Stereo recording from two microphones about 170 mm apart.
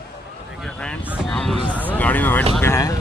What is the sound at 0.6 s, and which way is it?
Vehicle, 5° left (ahead or behind).